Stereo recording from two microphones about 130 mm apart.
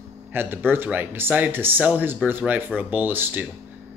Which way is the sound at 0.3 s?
15° right (ahead or behind).